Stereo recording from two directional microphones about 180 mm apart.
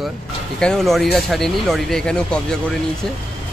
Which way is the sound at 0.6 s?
5° left (ahead or behind).